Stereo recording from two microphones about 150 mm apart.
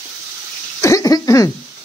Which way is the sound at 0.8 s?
20° left (ahead or behind).